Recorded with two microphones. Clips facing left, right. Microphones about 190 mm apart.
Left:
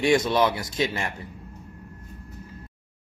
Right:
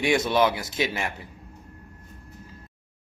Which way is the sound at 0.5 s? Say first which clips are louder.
Left 1 dB; 5° right (ahead or behind).